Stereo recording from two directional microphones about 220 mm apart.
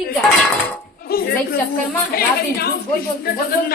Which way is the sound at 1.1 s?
45° left (ahead or behind).